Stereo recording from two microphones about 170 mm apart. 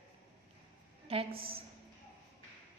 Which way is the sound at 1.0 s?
35° right (ahead or behind).